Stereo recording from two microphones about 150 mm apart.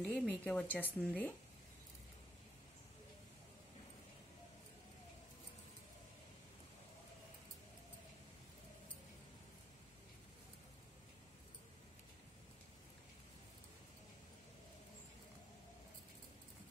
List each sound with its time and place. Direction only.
0.0 s speech: centre (ahead or behind)